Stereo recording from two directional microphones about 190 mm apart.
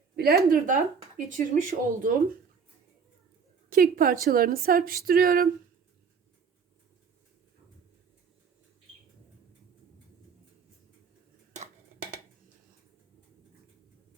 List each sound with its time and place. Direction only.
0.2 s speech: 55° right (ahead or behind)
3.7 s speech: 50° right (ahead or behind)